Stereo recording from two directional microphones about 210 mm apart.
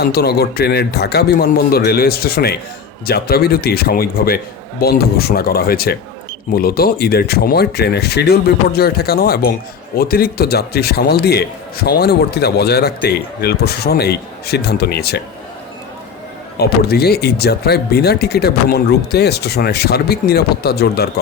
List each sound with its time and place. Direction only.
0.0 s a man's voice: 50° left (ahead or behind)
16.6 s a man's voice: 50° left (ahead or behind)